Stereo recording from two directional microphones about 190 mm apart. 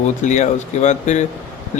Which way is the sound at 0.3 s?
40° left (ahead or behind).